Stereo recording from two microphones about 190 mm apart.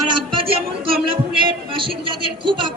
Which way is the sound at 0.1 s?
25° right (ahead or behind).